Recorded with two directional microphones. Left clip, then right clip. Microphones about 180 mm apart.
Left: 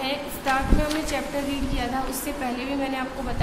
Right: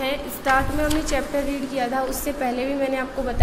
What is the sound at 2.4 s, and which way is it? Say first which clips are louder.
Speech: right 5 dB; 20° right (ahead or behind).